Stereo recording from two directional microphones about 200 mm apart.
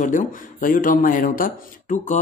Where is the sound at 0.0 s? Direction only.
40° left (ahead or behind).